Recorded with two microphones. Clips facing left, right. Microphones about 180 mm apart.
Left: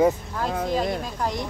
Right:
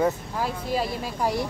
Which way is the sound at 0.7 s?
10° right (ahead or behind).